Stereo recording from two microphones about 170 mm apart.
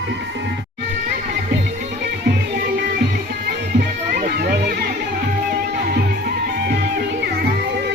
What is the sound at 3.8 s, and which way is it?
Music, 70° right (ahead or behind).